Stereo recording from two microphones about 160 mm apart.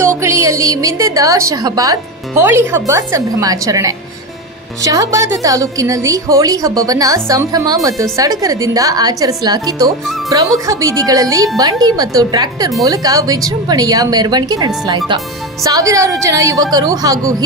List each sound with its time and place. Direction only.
0.2 s a woman's voice: 15° right (ahead or behind)